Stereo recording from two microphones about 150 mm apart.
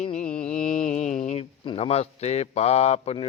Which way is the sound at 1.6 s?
40° left (ahead or behind).